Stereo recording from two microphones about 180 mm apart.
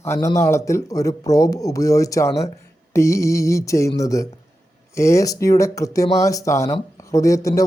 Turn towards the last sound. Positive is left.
turn(degrees=20)  # may be behind; listen again after turning